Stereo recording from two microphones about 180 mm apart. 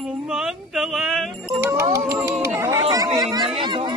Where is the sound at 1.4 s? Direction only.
15° right (ahead or behind).